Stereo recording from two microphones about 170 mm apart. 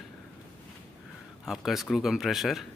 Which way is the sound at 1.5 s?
Centre (ahead or behind).